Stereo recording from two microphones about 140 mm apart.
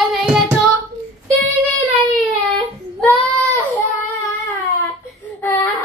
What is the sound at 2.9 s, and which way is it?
Child singing, 15° left (ahead or behind).